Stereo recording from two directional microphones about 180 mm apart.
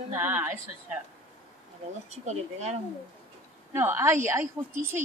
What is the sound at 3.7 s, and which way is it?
Speech, 15° right (ahead or behind).